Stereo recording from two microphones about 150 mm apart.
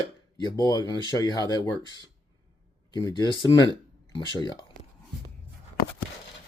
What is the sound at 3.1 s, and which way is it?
Speech, 30° left (ahead or behind).